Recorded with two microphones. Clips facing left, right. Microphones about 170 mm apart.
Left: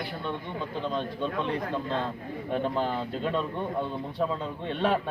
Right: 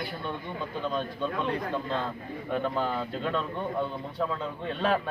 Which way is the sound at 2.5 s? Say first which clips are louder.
Left 1 dB; 30° left (ahead or behind).